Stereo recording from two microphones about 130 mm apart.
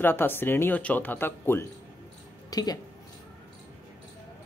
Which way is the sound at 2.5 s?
30° left (ahead or behind).